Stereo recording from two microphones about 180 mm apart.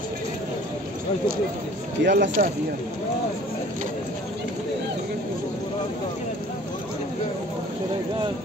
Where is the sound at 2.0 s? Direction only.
70° right (ahead or behind).